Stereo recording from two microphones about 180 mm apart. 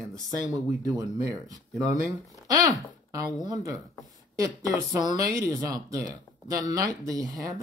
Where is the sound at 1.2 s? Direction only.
20° right (ahead or behind).